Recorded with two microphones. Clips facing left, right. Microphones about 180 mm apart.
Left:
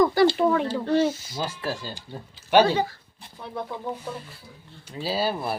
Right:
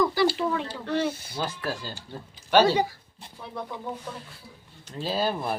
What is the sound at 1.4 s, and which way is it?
Speech, 10° left (ahead or behind).